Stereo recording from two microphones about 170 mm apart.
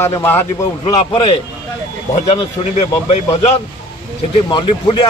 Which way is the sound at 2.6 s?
40° left (ahead or behind).